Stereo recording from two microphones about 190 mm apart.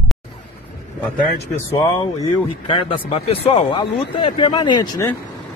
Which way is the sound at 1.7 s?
20° left (ahead or behind).